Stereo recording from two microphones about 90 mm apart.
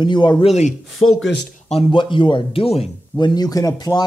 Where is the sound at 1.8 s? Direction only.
70° left (ahead or behind).